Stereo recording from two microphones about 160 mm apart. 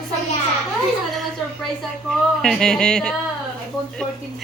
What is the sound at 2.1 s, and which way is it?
Speech, 5° left (ahead or behind).